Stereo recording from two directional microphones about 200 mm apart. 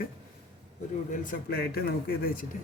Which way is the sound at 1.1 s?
40° left (ahead or behind).